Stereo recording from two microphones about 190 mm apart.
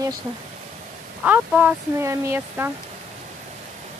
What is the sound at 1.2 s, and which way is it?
Speech, 10° right (ahead or behind).